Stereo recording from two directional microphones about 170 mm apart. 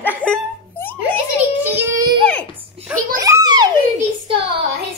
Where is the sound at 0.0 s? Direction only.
5° left (ahead or behind).